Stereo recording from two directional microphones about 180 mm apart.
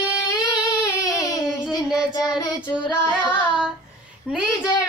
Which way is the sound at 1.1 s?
20° left (ahead or behind).